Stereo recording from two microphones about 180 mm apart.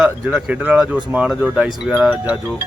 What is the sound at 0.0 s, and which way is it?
Speech, 5° right (ahead or behind).